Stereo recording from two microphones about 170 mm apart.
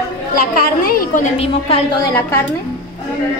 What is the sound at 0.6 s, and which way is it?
A woman's voice, 60° left (ahead or behind).